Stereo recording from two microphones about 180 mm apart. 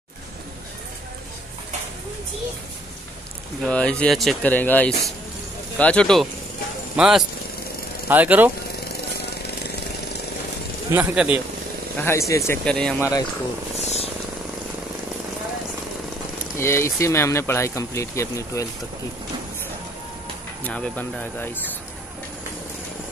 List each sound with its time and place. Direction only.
3.6 s speech: 5° left (ahead or behind)
10.9 s speech: 10° right (ahead or behind)
12.0 s speech: 15° left (ahead or behind)
12.6 s speech: 5° left (ahead or behind)
13.7 s helicopter: 35° left (ahead or behind)
16.5 s speech: 15° left (ahead or behind)
20.6 s speech: 5° left (ahead or behind)